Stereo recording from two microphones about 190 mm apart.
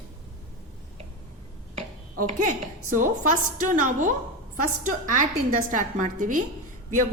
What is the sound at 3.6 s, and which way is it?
A woman's voice, 45° right (ahead or behind).